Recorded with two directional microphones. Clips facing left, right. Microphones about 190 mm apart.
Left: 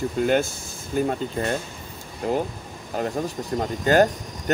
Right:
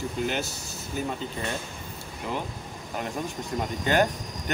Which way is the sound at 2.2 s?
40° left (ahead or behind).